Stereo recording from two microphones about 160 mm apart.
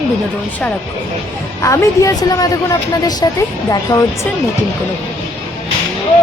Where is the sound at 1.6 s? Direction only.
20° left (ahead or behind).